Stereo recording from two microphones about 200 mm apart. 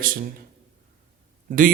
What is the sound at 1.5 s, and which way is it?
Speech, 45° right (ahead or behind).